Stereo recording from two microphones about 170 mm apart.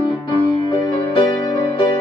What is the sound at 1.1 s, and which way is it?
Music, 30° left (ahead or behind).